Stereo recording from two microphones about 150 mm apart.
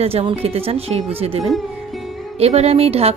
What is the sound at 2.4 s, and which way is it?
Speech, 45° right (ahead or behind).